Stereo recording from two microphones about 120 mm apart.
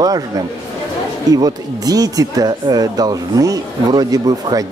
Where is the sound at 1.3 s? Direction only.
30° right (ahead or behind).